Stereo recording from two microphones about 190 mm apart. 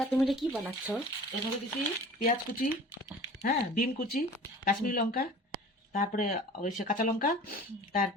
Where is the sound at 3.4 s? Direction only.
50° left (ahead or behind).